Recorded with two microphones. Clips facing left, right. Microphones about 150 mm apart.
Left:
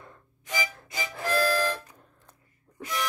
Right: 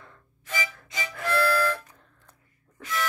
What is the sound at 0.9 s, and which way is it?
Music, 30° left (ahead or behind).